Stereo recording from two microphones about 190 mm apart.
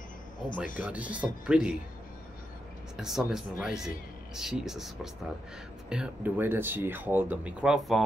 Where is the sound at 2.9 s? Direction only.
Centre (ahead or behind).